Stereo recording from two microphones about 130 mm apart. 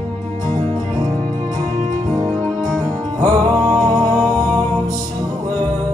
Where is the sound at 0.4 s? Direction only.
35° right (ahead or behind).